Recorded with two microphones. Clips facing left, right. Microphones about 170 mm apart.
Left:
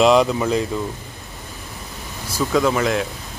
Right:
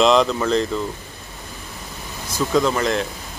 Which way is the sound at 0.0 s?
10° left (ahead or behind).